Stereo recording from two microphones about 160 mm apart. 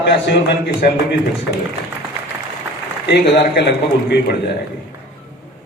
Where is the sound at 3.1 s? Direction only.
90° left.